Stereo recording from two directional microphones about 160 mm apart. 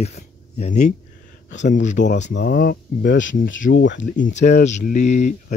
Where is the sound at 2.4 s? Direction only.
70° left (ahead or behind).